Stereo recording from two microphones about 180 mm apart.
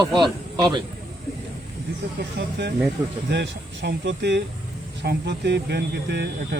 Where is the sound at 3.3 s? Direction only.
75° right (ahead or behind).